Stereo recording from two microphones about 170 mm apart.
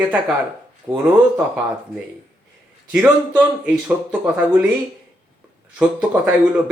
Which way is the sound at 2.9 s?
10° right (ahead or behind).